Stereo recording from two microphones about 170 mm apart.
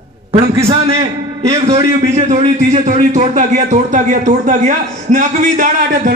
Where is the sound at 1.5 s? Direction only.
35° right (ahead or behind).